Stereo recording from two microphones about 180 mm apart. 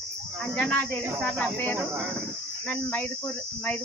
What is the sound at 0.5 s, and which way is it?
Speech, 10° left (ahead or behind).